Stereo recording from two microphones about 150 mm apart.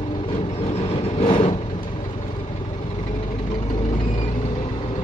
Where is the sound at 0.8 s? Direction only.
35° left (ahead or behind).